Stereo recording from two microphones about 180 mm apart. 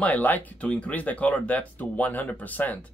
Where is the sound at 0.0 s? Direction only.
10° left (ahead or behind).